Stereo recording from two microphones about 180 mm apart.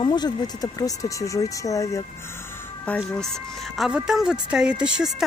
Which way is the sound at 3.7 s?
Centre (ahead or behind).